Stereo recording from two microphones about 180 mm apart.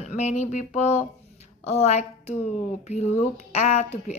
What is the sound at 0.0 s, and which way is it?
Speech, 40° left (ahead or behind).